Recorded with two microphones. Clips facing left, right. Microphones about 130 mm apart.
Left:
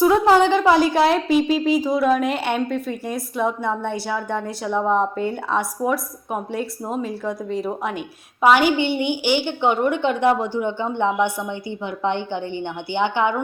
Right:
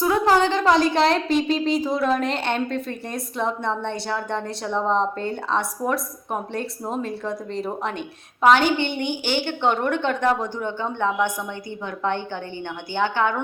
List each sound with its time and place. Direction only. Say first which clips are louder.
0.0 s a woman's voice: left 4 dB; 15° left (ahead or behind)